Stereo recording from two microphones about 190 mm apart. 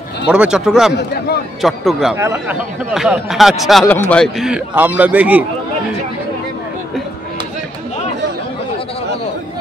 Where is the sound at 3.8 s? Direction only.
10° left (ahead or behind); by 5.5 s 10° right (ahead or behind).